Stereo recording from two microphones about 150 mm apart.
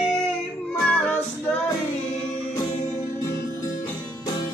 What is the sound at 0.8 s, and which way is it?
Child singing, 10° left (ahead or behind).